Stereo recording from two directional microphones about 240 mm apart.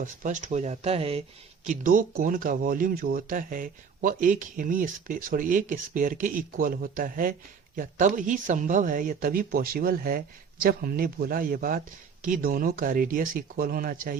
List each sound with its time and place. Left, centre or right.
0.0 s speech: right